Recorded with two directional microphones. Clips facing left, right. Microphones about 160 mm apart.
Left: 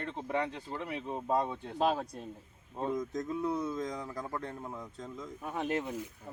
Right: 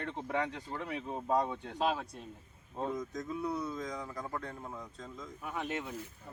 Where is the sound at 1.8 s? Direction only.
40° left (ahead or behind).